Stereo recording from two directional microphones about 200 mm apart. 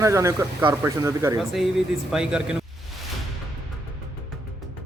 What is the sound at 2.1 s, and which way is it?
Speech, 5° right (ahead or behind).